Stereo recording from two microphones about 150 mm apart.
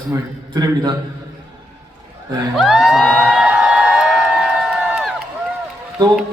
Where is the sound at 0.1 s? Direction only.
25° right (ahead or behind).